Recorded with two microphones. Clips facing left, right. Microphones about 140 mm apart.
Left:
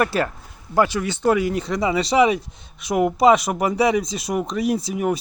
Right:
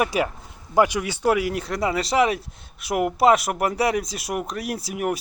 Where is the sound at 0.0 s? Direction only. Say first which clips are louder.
Left 2 dB; 10° right (ahead or behind).